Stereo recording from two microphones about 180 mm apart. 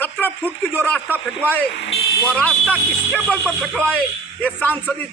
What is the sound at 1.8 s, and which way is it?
Speech, 70° left (ahead or behind).